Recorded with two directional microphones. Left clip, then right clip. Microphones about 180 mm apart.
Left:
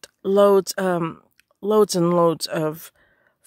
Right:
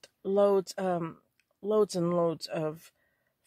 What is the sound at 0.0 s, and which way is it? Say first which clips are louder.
Speech: left 9 dB; 50° left (ahead or behind).